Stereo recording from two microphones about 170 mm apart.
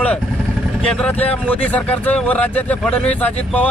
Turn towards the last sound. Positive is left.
turn(degrees=10)  # may be behind; listen again after turning